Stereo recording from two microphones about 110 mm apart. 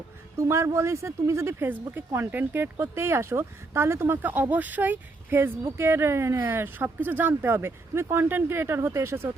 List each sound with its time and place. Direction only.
0.3 s speech: 25° right (ahead or behind)